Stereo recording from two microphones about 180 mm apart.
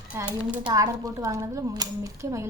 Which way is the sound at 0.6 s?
20° right (ahead or behind).